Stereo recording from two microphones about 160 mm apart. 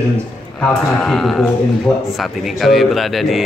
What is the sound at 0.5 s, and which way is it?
A man's voice, 5° left (ahead or behind).